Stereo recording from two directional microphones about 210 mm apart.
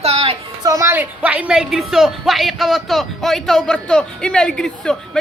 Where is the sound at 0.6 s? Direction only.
15° right (ahead or behind).